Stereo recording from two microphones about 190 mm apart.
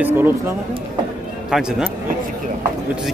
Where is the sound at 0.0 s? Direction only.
10° right (ahead or behind).